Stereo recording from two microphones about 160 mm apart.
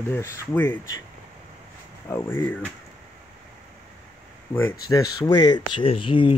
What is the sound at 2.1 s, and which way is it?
Speech, 15° left (ahead or behind).